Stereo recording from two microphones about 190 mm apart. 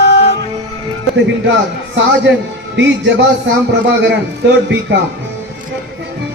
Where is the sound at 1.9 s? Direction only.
70° right (ahead or behind).